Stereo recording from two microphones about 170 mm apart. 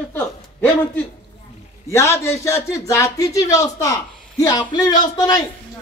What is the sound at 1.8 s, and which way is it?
A man's voice, 15° left (ahead or behind).